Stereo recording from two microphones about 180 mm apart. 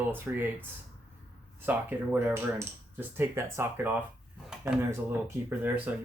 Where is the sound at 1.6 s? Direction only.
10° right (ahead or behind).